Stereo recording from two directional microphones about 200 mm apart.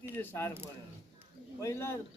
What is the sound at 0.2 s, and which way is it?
Speech, 10° left (ahead or behind).